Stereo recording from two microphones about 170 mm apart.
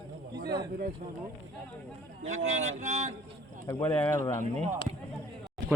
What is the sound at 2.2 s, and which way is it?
Speech, 45° right (ahead or behind).